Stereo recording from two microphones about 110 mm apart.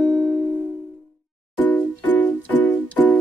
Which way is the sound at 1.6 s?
15° left (ahead or behind).